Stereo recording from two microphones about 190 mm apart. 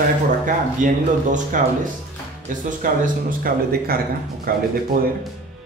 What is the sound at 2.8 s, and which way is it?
A man's voice, 50° right (ahead or behind).